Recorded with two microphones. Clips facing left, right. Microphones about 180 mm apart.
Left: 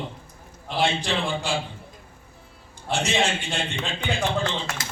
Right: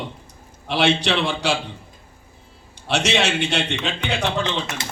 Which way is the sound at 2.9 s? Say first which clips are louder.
Right 3 dB; 75° right (ahead or behind).